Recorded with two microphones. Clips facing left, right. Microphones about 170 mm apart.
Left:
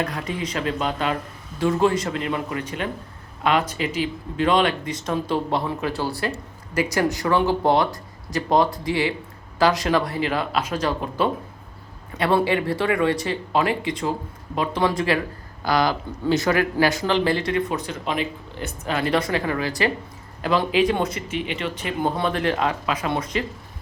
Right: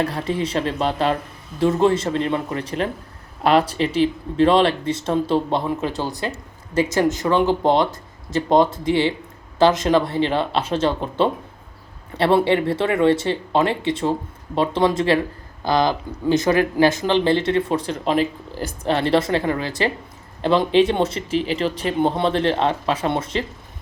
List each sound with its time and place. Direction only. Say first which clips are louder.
0.0 s speech: right 4 dB; 30° right (ahead or behind)